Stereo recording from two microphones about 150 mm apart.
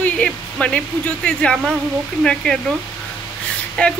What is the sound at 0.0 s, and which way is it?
Speech, 5° left (ahead or behind).